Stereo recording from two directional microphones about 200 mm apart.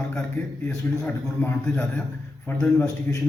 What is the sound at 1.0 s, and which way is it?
A man's voice, 10° left (ahead or behind).